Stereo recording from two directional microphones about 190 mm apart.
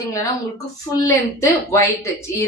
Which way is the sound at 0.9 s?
15° left (ahead or behind).